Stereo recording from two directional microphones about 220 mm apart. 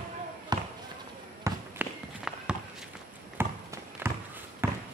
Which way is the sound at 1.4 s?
5° right (ahead or behind).